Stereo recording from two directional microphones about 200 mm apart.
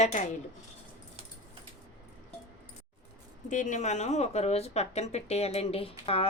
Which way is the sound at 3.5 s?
40° left (ahead or behind).